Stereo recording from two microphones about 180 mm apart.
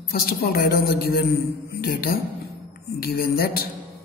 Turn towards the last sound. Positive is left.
turn(degrees=55)  # may be behind; listen again after turning